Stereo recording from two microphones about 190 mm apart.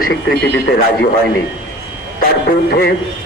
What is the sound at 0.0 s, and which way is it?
Speech, 60° left (ahead or behind).